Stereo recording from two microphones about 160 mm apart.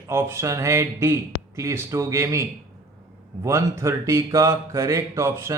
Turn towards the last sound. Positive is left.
turn(degrees=-20)  # may be behind; listen again after turning